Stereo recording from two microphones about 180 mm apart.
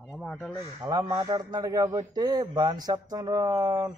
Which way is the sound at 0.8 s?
20° right (ahead or behind).